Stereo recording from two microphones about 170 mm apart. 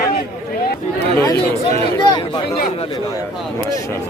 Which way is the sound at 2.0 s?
25° left (ahead or behind).